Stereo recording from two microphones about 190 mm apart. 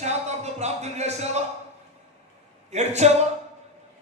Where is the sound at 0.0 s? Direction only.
35° right (ahead or behind).